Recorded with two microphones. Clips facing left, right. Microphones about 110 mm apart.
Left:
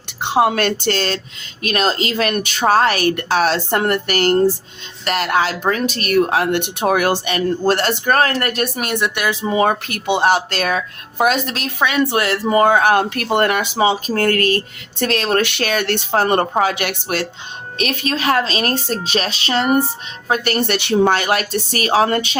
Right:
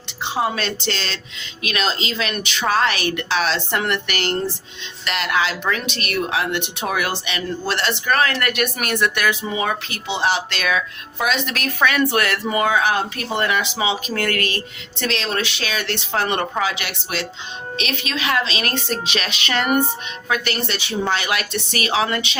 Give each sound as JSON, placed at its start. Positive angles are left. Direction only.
{"t": 0.2, "sound": "a woman's voice", "side_deg": 60}
{"t": 9.4, "sound": "speech", "side_deg": 40}
{"t": 11.5, "sound": "a woman's voice", "side_deg": 25}
{"t": 20.2, "sound": "speech", "side_deg": 45}